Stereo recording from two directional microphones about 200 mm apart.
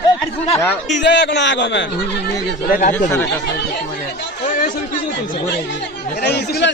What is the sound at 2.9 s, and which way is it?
Speech, 10° left (ahead or behind).